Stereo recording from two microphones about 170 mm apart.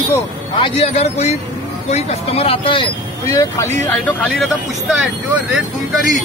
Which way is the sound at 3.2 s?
15° left (ahead or behind).